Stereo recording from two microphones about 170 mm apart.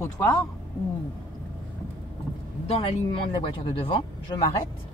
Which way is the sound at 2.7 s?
30° left (ahead or behind).